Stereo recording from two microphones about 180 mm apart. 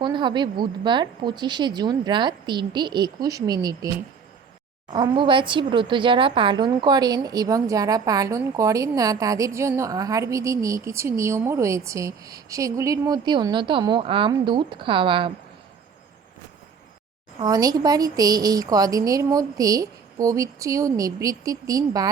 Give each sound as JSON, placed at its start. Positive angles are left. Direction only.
{"t": 0.0, "sound": "a woman's voice", "side_deg": -25}
{"t": 4.9, "sound": "a woman's voice", "side_deg": -25}
{"t": 17.4, "sound": "a woman's voice", "side_deg": -20}